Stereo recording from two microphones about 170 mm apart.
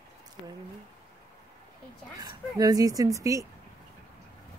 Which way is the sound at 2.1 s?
20° right (ahead or behind).